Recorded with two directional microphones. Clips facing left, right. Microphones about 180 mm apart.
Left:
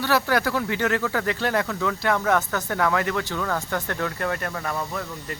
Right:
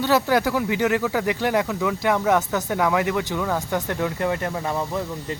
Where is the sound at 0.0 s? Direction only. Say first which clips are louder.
Right 3 dB; 15° right (ahead or behind).